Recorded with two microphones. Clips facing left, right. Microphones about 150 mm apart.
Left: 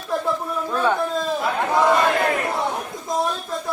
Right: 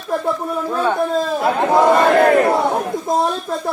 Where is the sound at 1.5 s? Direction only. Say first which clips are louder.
Right 6 dB; 40° right (ahead or behind).